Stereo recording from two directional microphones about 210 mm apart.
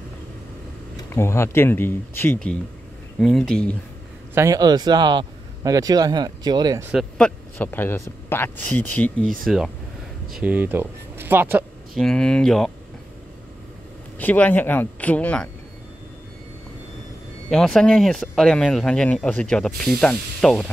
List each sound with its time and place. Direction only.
1.1 s a man's voice: 10° left (ahead or behind)
4.4 s speech: 15° right (ahead or behind)
6.9 s a man's voice: centre (ahead or behind)
11.9 s speech: centre (ahead or behind)
14.1 s a man's voice: 10° left (ahead or behind)
17.5 s speech: 5° left (ahead or behind)